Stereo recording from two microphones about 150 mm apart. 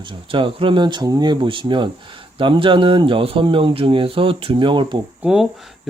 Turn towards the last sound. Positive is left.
turn(degrees=-5)  # may be behind; listen again after turning